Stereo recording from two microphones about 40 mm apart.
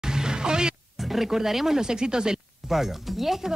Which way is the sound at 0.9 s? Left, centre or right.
Centre.